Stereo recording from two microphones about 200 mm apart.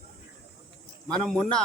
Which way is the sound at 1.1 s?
5° left (ahead or behind).